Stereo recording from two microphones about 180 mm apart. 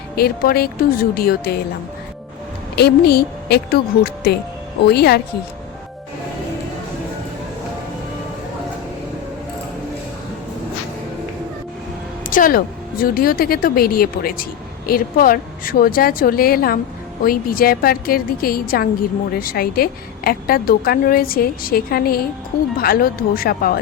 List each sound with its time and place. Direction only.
0.2 s a woman's voice: 60° left (ahead or behind)
2.7 s a woman's voice: 65° left (ahead or behind)
12.3 s a woman's voice: 50° left (ahead or behind)